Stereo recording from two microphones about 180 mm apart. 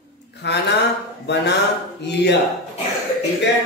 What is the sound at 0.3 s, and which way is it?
A woman's voice, 70° left (ahead or behind).